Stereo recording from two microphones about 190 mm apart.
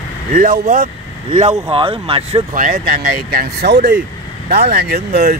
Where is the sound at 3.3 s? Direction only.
60° right (ahead or behind).